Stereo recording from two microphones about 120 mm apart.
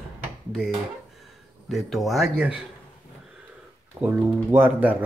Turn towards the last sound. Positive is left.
turn(degrees=-15)  # may be behind; listen again after turning